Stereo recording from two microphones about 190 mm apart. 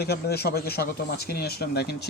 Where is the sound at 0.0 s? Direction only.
55° left (ahead or behind).